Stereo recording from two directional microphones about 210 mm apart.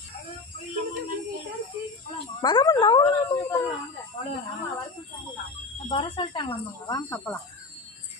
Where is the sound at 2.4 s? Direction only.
20° left (ahead or behind).